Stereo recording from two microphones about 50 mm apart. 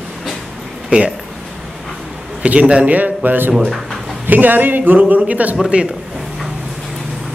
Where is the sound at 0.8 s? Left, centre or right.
Centre.